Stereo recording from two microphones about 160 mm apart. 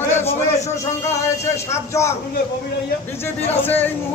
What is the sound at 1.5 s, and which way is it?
Speech, 15° left (ahead or behind).